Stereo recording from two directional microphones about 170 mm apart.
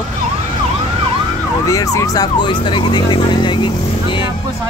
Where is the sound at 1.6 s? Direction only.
20° left (ahead or behind).